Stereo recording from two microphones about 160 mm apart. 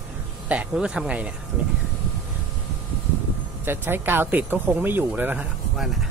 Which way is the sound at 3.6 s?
15° right (ahead or behind).